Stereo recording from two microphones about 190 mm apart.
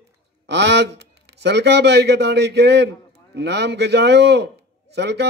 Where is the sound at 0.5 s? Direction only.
65° right (ahead or behind).